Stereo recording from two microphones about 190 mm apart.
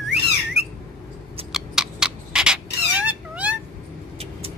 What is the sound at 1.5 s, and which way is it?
Cat, 5° right (ahead or behind).